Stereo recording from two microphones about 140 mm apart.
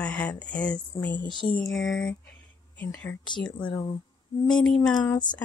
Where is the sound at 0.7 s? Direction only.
30° left (ahead or behind).